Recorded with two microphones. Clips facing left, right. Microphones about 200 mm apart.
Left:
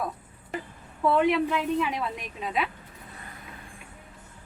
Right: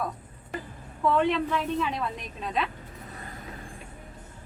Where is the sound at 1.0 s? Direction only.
10° left (ahead or behind).